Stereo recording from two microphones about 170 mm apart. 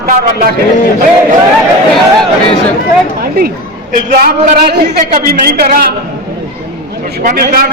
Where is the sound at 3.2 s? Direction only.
65° right (ahead or behind).